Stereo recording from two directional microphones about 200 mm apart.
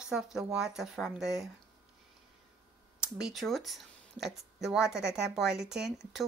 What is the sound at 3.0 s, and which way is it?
Speech, 5° right (ahead or behind).